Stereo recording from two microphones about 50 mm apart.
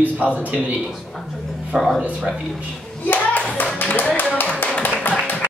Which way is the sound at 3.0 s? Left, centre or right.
Left.